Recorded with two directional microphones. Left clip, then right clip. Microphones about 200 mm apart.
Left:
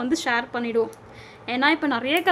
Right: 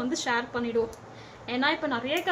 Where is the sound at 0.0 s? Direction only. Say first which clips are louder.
Left 5 dB; 60° left (ahead or behind).